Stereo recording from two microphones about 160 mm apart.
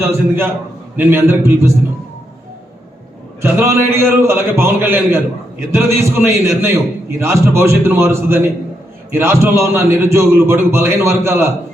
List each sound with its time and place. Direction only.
0.0 s a man's voice: 15° right (ahead or behind)
3.4 s a man's voice: 15° right (ahead or behind)